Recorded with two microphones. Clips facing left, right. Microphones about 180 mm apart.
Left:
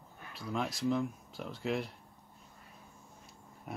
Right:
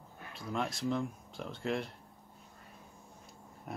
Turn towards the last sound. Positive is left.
turn(degrees=5)  # may be behind; listen again after turning